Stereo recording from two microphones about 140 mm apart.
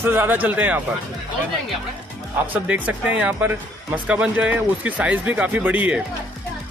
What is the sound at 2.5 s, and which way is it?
Speech, 10° right (ahead or behind).